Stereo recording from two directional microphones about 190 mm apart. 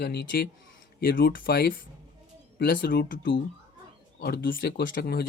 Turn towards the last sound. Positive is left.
turn(degrees=55)  # may be behind; listen again after turning